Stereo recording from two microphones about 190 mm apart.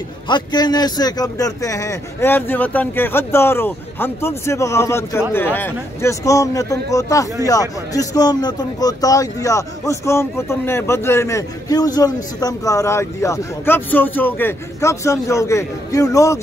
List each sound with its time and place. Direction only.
0.3 s speech: 20° left (ahead or behind)